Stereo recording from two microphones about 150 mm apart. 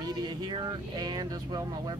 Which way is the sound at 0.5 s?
30° right (ahead or behind).